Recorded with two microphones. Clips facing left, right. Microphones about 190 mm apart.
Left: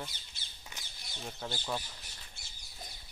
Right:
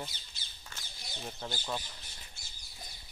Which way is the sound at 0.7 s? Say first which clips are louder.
Even; 15° left (ahead or behind).